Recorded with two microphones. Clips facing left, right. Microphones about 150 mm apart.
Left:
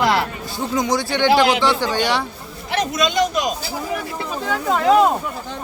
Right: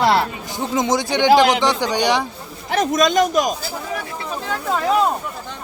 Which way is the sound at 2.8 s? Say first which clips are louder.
Right 3 dB; 45° right (ahead or behind).